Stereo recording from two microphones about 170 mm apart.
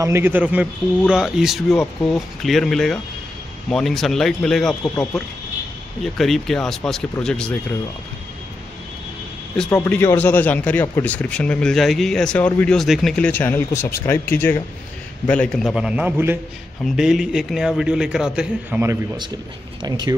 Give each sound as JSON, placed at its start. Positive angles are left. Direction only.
{"t": 0.0, "sound": "speech", "side_deg": -15}
{"t": 6.1, "sound": "speech", "side_deg": 0}
{"t": 9.7, "sound": "speech", "side_deg": 15}
{"t": 19.8, "sound": "speech", "side_deg": -25}